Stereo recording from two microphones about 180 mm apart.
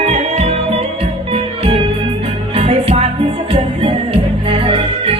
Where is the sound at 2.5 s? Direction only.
35° right (ahead or behind).